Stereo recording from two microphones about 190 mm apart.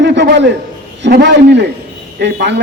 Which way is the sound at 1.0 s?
65° right (ahead or behind).